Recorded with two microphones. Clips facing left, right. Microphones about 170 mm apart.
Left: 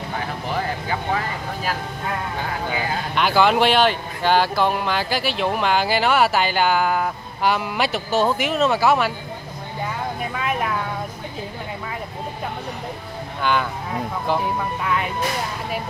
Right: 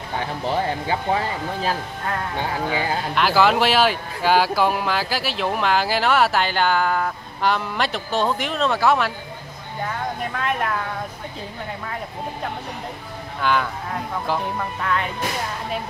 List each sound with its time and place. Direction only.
0.8 s speech: 30° right (ahead or behind)
3.2 s speech: centre (ahead or behind)
13.4 s speech: centre (ahead or behind)